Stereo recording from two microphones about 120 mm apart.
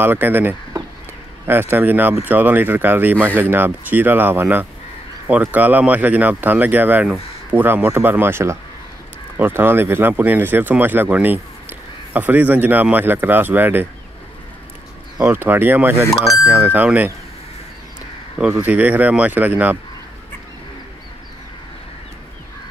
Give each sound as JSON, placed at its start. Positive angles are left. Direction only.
{"t": 0.0, "sound": "speech", "side_deg": -15}
{"t": 15.2, "sound": "speech", "side_deg": -20}
{"t": 16.1, "sound": "speech", "side_deg": 25}
{"t": 16.4, "sound": "speech", "side_deg": -15}
{"t": 18.5, "sound": "speech", "side_deg": -15}